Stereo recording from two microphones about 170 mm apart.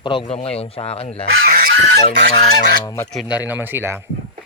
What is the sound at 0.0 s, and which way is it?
Speech, 30° left (ahead or behind).